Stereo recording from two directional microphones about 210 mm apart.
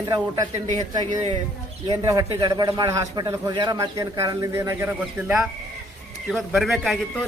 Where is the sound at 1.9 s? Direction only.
20° right (ahead or behind).